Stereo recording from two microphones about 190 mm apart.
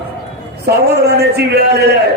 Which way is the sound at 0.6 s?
60° right (ahead or behind).